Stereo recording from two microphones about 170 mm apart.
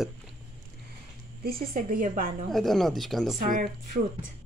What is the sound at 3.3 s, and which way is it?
Speech, 55° right (ahead or behind).